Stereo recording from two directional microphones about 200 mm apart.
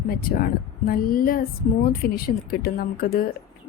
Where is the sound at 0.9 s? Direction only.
45° left (ahead or behind).